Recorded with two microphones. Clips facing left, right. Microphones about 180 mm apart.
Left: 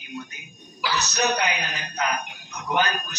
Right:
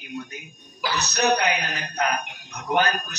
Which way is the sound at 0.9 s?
60° right (ahead or behind).